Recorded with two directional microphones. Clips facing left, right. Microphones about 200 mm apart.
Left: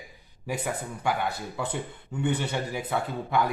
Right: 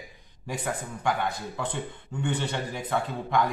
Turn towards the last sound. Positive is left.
turn(degrees=10)  # may be behind; listen again after turning